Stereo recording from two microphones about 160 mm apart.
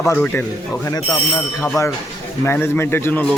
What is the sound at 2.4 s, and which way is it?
Speech, 15° left (ahead or behind).